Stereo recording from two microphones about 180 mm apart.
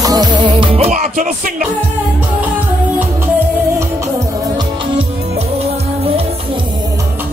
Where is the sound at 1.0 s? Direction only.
50° right (ahead or behind).